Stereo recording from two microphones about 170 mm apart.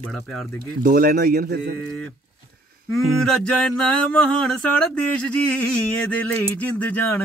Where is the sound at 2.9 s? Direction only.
Centre (ahead or behind).